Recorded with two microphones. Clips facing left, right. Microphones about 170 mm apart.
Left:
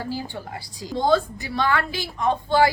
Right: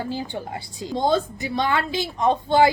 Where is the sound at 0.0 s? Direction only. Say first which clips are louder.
Right 2 dB; 20° right (ahead or behind).